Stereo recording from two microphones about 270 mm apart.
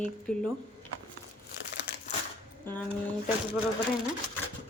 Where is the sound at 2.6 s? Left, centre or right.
Centre.